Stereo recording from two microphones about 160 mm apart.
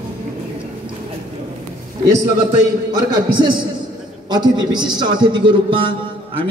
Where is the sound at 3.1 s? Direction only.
30° right (ahead or behind).